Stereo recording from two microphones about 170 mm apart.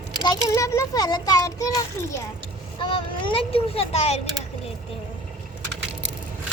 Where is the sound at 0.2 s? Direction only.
25° left (ahead or behind).